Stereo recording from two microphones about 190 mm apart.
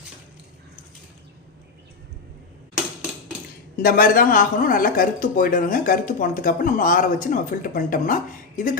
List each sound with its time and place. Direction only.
3.8 s speech: 50° left (ahead or behind)